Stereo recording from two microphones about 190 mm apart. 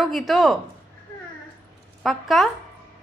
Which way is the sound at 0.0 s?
Centre (ahead or behind).